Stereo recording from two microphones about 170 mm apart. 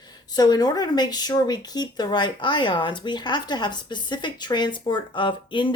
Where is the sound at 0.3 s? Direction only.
25° left (ahead or behind).